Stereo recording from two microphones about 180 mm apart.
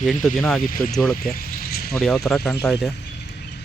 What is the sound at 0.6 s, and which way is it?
Speech, 50° left (ahead or behind).